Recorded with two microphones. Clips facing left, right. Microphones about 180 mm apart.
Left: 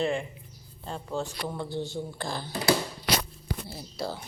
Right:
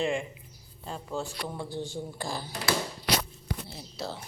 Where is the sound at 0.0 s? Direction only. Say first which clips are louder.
Left 1 dB; 35° left (ahead or behind).